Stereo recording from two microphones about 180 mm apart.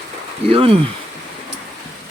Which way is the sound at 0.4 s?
30° right (ahead or behind).